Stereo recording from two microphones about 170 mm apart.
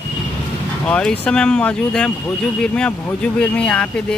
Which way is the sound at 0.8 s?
5° left (ahead or behind).